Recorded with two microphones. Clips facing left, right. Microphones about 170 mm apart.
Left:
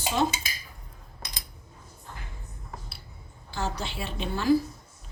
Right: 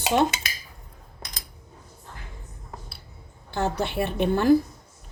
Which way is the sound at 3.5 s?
60° right (ahead or behind).